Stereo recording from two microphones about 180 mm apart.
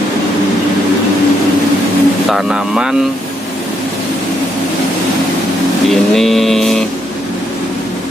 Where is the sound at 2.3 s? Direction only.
5° right (ahead or behind).